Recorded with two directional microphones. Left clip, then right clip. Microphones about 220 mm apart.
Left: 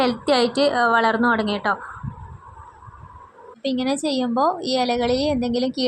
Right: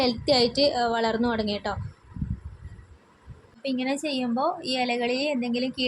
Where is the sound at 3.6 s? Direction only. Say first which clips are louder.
Left 5 dB; 20° left (ahead or behind).